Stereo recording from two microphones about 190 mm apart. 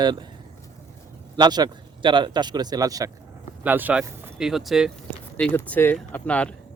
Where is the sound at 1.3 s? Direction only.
20° right (ahead or behind).